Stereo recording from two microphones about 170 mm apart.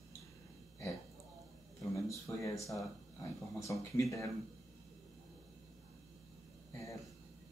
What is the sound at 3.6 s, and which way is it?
Speech, 20° left (ahead or behind).